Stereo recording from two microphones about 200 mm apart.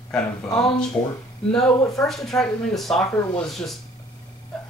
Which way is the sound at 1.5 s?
5° left (ahead or behind).